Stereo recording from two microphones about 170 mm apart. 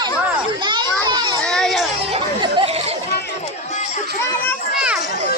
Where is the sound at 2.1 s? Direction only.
25° right (ahead or behind).